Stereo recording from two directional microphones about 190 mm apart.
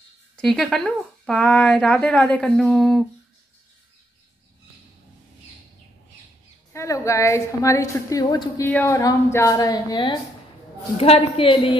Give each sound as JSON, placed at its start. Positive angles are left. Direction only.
{"t": 0.4, "sound": "a woman's voice", "side_deg": 0}
{"t": 6.7, "sound": "a woman's voice", "side_deg": 15}